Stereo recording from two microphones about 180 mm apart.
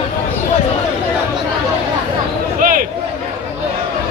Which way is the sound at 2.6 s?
50° right (ahead or behind).